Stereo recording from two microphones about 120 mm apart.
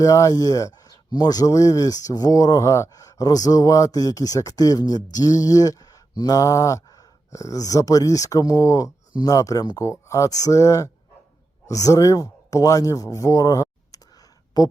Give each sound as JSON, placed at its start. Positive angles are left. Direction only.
{"t": 0.0, "sound": "speech", "side_deg": 25}